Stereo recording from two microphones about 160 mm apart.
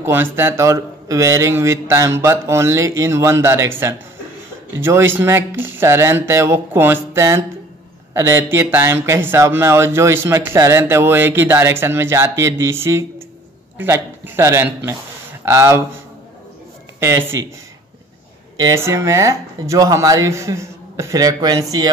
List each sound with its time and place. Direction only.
0.0 s a man's voice: 15° right (ahead or behind)
17.0 s speech: 15° right (ahead or behind)
18.6 s speech: 20° right (ahead or behind)